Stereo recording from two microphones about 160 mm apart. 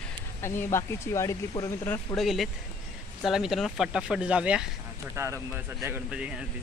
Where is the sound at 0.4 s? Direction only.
15° left (ahead or behind).